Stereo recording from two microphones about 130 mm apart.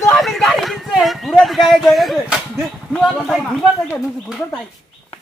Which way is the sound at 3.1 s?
Centre (ahead or behind).